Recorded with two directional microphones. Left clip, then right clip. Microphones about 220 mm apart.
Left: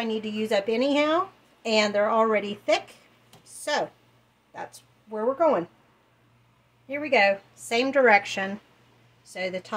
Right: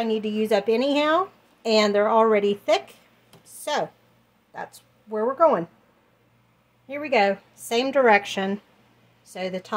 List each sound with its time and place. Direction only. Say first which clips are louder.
0.0 s speech: right 4 dB; 40° right (ahead or behind)
5.1 s speech: right 3 dB; 35° right (ahead or behind)
6.9 s speech: even; 30° right (ahead or behind)